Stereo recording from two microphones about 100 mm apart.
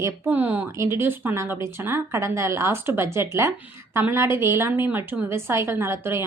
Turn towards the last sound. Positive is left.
turn(degrees=-25)  # may be behind; listen again after turning